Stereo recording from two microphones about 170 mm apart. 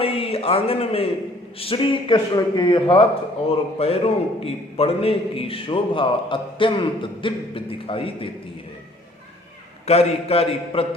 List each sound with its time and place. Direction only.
0.0 s a man's voice: 35° left (ahead or behind)
9.8 s a man's voice: 35° left (ahead or behind)